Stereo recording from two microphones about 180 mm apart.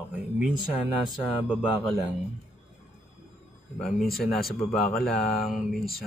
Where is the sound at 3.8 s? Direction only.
Centre (ahead or behind).